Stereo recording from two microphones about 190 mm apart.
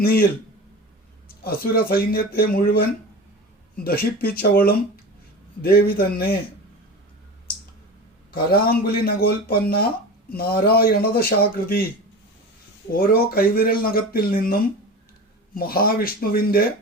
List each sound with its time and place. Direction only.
0.0 s speech: 50° left (ahead or behind)
1.5 s speech: 50° left (ahead or behind)
3.8 s speech: 50° left (ahead or behind)
8.3 s speech: 50° left (ahead or behind)
12.9 s speech: 50° left (ahead or behind)